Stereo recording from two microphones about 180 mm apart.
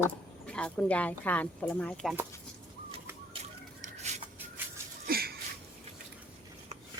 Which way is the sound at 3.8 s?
40° right (ahead or behind).